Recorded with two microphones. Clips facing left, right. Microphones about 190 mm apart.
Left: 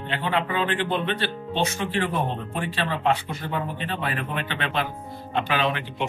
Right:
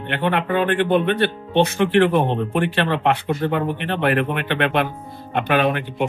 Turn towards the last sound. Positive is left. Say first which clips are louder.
# right 6 dB
turn(degrees=-50)  # may be behind; listen again after turning